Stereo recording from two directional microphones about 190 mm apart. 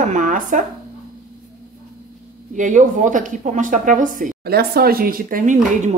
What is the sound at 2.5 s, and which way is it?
Speech, 40° right (ahead or behind).